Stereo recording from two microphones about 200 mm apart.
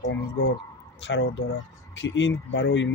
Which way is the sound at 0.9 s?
65° left (ahead or behind).